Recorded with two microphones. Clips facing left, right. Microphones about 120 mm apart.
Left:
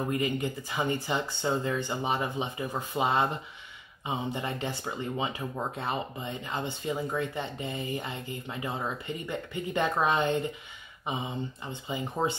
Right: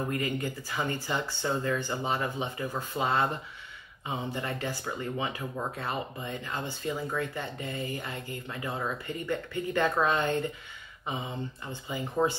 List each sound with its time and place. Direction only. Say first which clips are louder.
0.1 s speech: left 2 dB; 20° left (ahead or behind)